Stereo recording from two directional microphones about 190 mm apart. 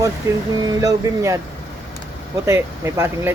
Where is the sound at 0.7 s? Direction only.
15° right (ahead or behind).